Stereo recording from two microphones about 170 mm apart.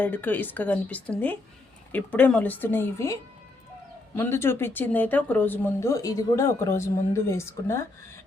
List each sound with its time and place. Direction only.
0.0 s speech: 10° left (ahead or behind)